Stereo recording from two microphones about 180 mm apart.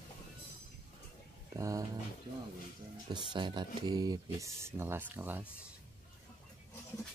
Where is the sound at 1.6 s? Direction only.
20° right (ahead or behind).